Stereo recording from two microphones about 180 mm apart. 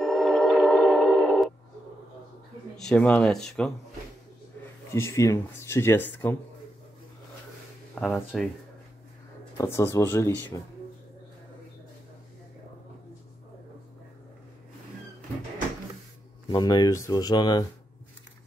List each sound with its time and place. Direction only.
0.0 s music: centre (ahead or behind)
2.8 s speech: 5° left (ahead or behind)
4.9 s speech: 15° left (ahead or behind)
7.9 s speech: centre (ahead or behind)
9.6 s speech: 15° left (ahead or behind)
16.4 s speech: 25° left (ahead or behind)